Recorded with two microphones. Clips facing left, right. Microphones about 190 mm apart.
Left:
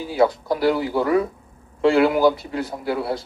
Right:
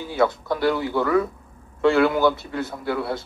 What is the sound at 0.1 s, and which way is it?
Speech, 15° left (ahead or behind).